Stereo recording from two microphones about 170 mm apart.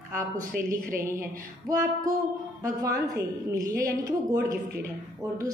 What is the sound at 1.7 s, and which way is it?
A woman's voice, 20° right (ahead or behind).